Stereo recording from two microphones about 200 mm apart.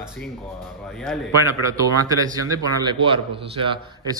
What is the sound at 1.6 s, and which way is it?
A man's voice, 15° right (ahead or behind).